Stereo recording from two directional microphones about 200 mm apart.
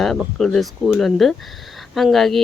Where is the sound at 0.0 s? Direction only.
Centre (ahead or behind).